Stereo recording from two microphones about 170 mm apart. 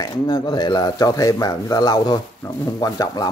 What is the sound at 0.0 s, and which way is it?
A man's voice, 25° left (ahead or behind).